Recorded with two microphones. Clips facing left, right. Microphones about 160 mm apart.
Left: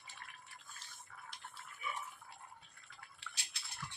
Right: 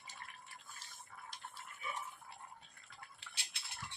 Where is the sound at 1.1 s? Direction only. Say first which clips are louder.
Right 1 dB; 35° right (ahead or behind).